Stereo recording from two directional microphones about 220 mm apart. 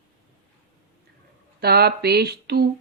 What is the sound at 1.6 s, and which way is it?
Speech, 45° right (ahead or behind).